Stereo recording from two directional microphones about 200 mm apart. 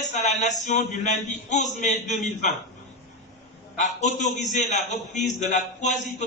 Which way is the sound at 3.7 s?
35° left (ahead or behind).